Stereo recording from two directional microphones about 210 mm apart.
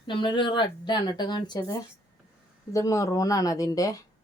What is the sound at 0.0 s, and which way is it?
A woman's voice, 25° left (ahead or behind).